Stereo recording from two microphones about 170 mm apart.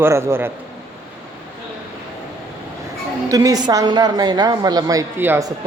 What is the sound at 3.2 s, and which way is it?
A woman's voice, 20° right (ahead or behind).